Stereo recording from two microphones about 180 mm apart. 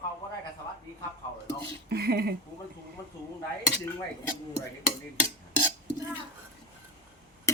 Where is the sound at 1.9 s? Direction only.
60° right (ahead or behind).